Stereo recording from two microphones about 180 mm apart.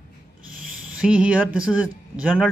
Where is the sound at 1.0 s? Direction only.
5° right (ahead or behind).